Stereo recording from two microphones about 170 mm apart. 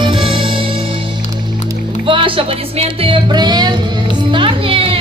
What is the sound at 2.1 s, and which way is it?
Music, 30° right (ahead or behind).